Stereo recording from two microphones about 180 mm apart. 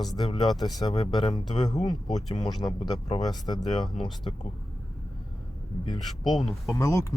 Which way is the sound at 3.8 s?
Centre (ahead or behind).